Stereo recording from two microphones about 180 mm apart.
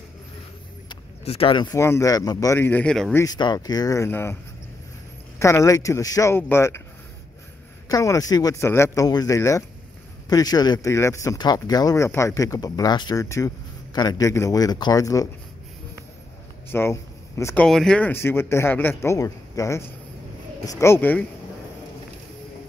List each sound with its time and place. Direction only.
0.8 s speech: 30° left (ahead or behind); by 3.2 s 5° left (ahead or behind)
3.2 s speech: 20° left (ahead or behind)
5.4 s speech: 15° left (ahead or behind)
7.9 s speech: 20° left (ahead or behind)
16.6 s speech: 10° left (ahead or behind)
17.6 s speech: 5° left (ahead or behind)